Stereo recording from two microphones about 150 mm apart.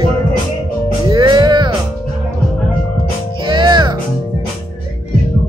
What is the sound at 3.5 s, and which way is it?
Music, 30° right (ahead or behind).